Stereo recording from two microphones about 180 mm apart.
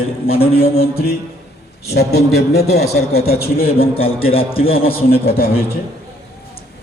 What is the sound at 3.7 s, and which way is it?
Speech, 30° left (ahead or behind).